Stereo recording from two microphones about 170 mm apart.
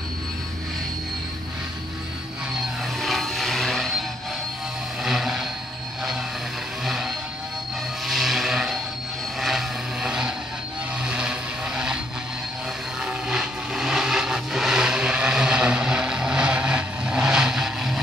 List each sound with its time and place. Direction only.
3.0 s a sound: centre (ahead or behind)
5.0 s vehicle: centre (ahead or behind)
6.8 s music: centre (ahead or behind)
8.1 s vehicle: centre (ahead or behind)
13.0 s vehicle: 5° right (ahead or behind)